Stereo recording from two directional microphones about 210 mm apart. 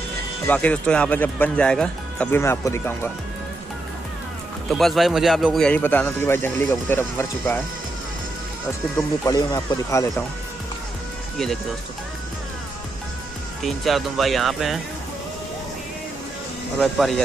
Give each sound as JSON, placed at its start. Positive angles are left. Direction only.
{"t": 0.5, "sound": "a man's voice", "side_deg": 5}
{"t": 4.6, "sound": "a man's voice", "side_deg": 0}
{"t": 9.2, "sound": "a man's voice", "side_deg": 20}
{"t": 13.7, "sound": "speech", "side_deg": 0}
{"t": 16.7, "sound": "speech", "side_deg": 0}